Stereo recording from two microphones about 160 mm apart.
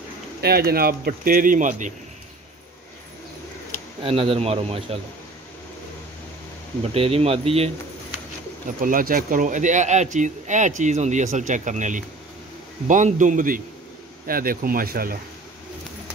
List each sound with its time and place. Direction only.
0.4 s speech: 75° right (ahead or behind); by 2.0 s 50° right (ahead or behind)
4.0 s speech: 35° right (ahead or behind)
6.8 s speech: 40° right (ahead or behind)
8.8 s speech: 60° right (ahead or behind)